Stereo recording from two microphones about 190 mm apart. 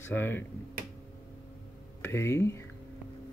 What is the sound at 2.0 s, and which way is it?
Speech, 15° left (ahead or behind).